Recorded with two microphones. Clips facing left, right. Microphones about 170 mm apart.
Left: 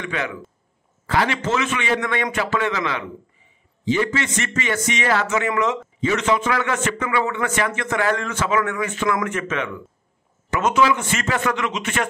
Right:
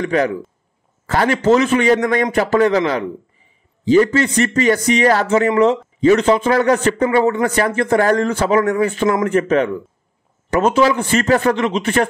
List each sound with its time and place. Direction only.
0.0 s a man's voice: 40° right (ahead or behind)